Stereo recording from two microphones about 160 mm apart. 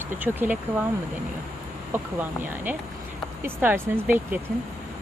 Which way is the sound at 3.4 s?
10° right (ahead or behind).